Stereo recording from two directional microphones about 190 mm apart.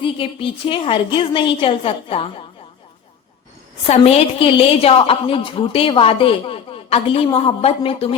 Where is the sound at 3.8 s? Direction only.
30° left (ahead or behind).